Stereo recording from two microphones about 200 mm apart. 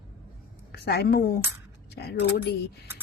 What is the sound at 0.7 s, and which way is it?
A woman's voice, 50° left (ahead or behind).